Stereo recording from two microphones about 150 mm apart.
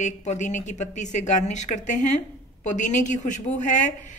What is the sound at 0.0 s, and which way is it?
A woman's voice, 50° left (ahead or behind).